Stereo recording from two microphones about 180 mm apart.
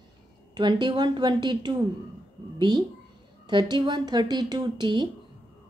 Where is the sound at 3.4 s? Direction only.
25° right (ahead or behind).